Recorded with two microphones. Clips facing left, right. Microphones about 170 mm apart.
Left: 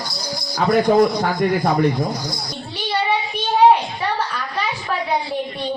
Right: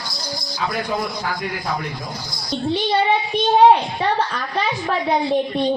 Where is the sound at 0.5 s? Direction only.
50° left (ahead or behind).